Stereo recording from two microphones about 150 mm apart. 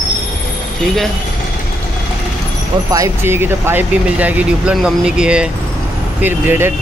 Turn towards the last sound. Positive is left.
turn(degrees=-15)  # may be behind; listen again after turning